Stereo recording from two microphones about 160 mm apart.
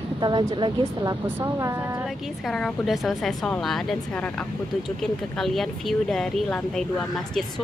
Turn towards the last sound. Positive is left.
turn(degrees=5)  # may be behind; listen again after turning